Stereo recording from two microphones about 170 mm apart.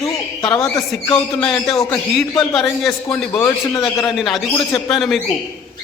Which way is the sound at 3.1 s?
10° left (ahead or behind).